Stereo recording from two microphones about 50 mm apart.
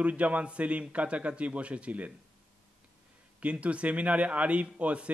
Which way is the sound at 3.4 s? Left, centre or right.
Right.